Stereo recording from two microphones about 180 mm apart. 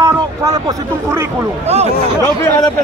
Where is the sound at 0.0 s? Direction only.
20° right (ahead or behind).